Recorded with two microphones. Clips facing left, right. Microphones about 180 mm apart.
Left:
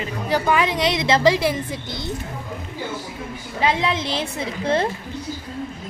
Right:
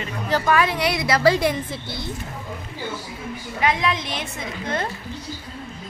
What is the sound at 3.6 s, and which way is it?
A woman's voice, 30° left (ahead or behind).